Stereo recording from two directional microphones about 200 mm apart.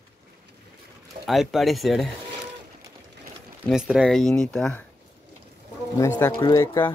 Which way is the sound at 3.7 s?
Centre (ahead or behind).